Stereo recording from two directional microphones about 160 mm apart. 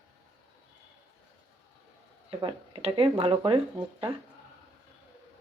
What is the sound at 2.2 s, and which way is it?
Speech, 35° right (ahead or behind).